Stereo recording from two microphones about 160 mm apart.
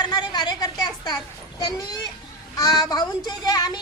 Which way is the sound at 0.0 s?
25° left (ahead or behind).